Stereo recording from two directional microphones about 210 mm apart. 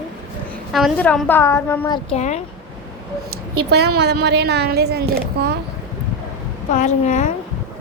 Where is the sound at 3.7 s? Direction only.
50° right (ahead or behind).